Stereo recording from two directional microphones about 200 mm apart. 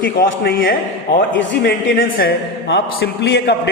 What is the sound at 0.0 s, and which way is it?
Speech, 45° left (ahead or behind).